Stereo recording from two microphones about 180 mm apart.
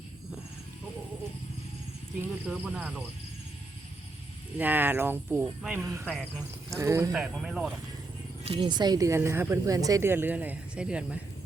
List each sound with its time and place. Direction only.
2.5 s speech: 5° right (ahead or behind)
4.5 s speech: 10° right (ahead or behind)
7.1 s speech: centre (ahead or behind)
8.4 s speech: 25° right (ahead or behind); by 11.2 s 5° right (ahead or behind)